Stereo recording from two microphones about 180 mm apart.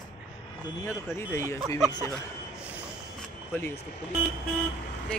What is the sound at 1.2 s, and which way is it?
Speech, 15° left (ahead or behind).